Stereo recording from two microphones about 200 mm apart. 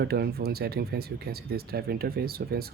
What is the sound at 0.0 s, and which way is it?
Speech, 50° right (ahead or behind).